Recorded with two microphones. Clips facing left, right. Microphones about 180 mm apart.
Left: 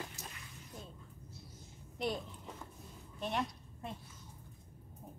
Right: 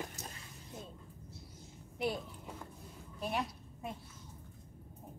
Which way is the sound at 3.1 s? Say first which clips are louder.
Even; 5° right (ahead or behind).